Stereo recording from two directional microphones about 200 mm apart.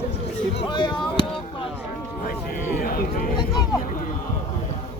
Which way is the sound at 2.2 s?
45° left (ahead or behind).